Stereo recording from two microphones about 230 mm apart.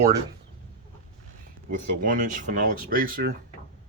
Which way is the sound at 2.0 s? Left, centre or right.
Right.